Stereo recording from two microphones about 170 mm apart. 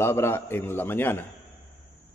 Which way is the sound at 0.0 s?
15° left (ahead or behind).